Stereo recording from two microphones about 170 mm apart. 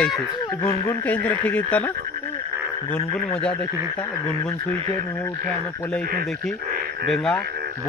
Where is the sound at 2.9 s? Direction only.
5° left (ahead or behind).